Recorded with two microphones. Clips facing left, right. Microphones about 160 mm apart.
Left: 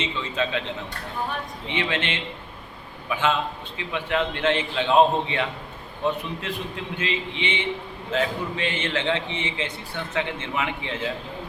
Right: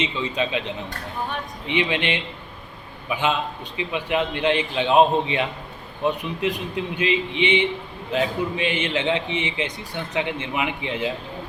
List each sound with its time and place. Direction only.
0.0 s a man's voice: 15° right (ahead or behind)
1.6 s a man's voice: 15° right (ahead or behind)